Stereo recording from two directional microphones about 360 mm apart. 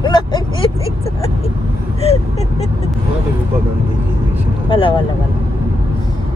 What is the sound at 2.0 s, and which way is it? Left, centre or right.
Speech, centre.